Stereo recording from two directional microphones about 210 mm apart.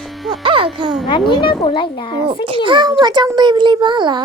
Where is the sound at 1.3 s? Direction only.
20° left (ahead or behind).